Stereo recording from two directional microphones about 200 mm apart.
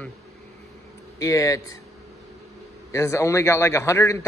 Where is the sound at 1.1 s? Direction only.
15° left (ahead or behind).